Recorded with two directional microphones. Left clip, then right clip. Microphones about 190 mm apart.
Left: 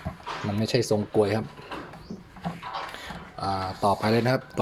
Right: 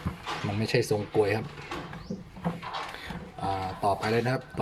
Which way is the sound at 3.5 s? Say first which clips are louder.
Left 3 dB; 15° left (ahead or behind).